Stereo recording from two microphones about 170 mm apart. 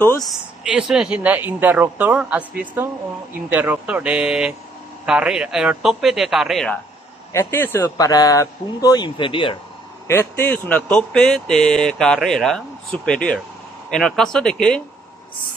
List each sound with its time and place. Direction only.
0.0 s speech: 15° left (ahead or behind)
0.7 s speech: 5° right (ahead or behind)
7.3 s speech: 15° left (ahead or behind); by 9.6 s 30° left (ahead or behind)
10.0 s speech: 15° left (ahead or behind)